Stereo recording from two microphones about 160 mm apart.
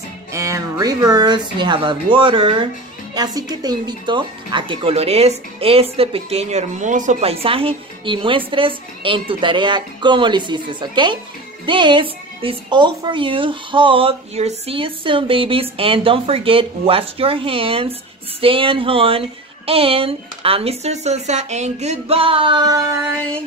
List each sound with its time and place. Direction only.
0.3 s speech: 20° right (ahead or behind)